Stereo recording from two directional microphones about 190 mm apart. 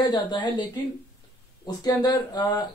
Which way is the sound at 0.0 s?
25° left (ahead or behind).